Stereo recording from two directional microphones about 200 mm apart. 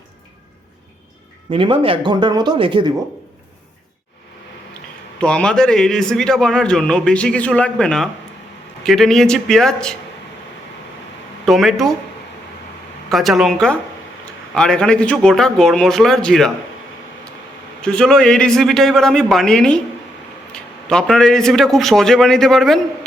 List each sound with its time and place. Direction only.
1.5 s speech: 25° right (ahead or behind)
5.2 s speech: 5° left (ahead or behind)
11.4 s speech: centre (ahead or behind)
13.1 s speech: centre (ahead or behind)
17.7 s speech: 5° left (ahead or behind)